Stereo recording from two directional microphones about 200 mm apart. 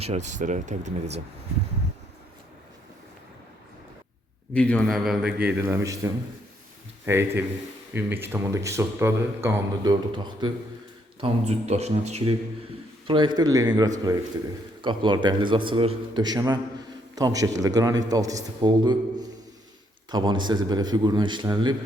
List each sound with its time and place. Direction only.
0.0 s speech: 35° right (ahead or behind)
4.5 s a man's voice: 5° left (ahead or behind); by 10.5 s 20° right (ahead or behind)
11.2 s a man's voice: 30° right (ahead or behind)
20.1 s a man's voice: 20° right (ahead or behind)